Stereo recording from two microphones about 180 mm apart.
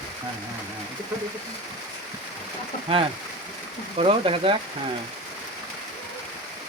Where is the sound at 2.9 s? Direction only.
30° right (ahead or behind).